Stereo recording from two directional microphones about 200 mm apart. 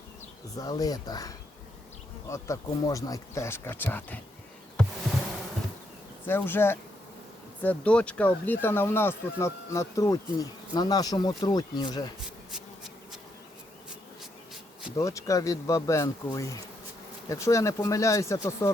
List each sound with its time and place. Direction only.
0.5 s speech: 20° left (ahead or behind)
6.2 s speech: 10° left (ahead or behind)
12.5 s bee: centre (ahead or behind)
14.9 s speech: 15° left (ahead or behind)